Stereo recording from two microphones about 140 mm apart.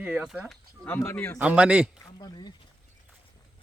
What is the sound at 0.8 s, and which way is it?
Speech, 20° left (ahead or behind).